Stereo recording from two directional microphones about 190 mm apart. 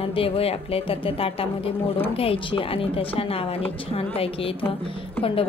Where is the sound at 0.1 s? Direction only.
30° left (ahead or behind).